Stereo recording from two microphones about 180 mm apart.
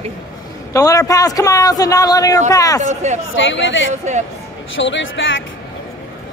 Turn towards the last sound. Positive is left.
turn(degrees=90)